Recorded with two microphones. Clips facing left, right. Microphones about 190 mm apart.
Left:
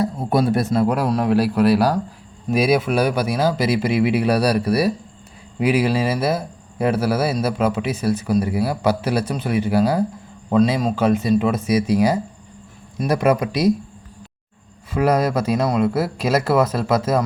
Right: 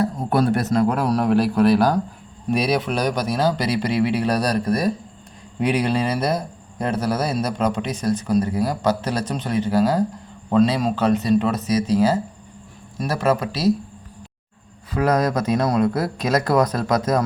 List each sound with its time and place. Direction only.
0.2 s speech: 10° left (ahead or behind)
14.9 s speech: 10° left (ahead or behind)